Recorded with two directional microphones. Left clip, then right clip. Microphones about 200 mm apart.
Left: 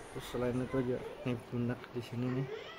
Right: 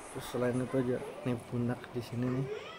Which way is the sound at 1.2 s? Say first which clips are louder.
Right 2 dB; centre (ahead or behind).